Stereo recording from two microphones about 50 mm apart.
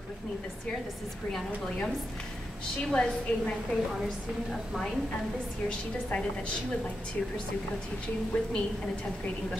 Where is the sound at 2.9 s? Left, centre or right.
Centre.